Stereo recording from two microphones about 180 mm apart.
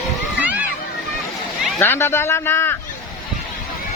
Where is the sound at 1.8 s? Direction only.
10° left (ahead or behind).